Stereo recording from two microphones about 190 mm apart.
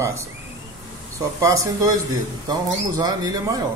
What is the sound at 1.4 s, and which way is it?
Speech, 15° right (ahead or behind).